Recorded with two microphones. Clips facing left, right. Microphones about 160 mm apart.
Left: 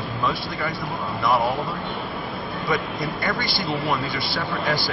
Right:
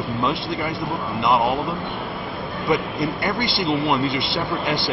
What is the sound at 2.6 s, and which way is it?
A man's voice, 20° right (ahead or behind).